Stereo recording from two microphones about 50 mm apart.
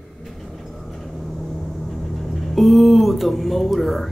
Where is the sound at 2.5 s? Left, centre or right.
Centre.